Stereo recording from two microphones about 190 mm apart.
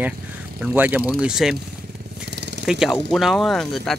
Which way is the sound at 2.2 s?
65° right (ahead or behind).